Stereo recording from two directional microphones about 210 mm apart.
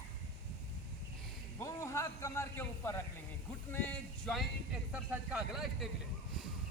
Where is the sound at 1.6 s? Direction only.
15° left (ahead or behind); by 5.9 s centre (ahead or behind).